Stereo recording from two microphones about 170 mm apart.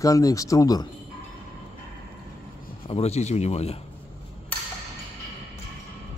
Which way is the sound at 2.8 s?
35° left (ahead or behind).